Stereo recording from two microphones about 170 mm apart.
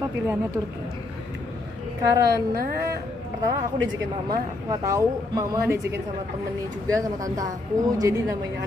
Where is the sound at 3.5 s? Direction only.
20° right (ahead or behind).